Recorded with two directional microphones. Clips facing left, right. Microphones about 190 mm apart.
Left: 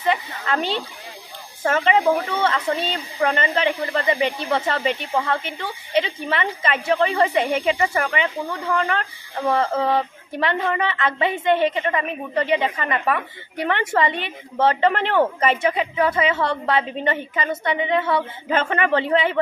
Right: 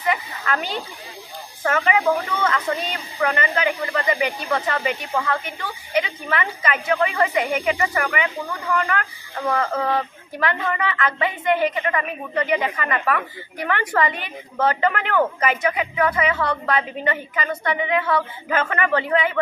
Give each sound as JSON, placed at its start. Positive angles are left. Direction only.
{"t": 0.0, "sound": "speech", "side_deg": 25}